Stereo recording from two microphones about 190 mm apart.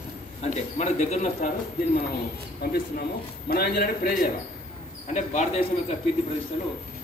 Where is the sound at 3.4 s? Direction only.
55° left (ahead or behind).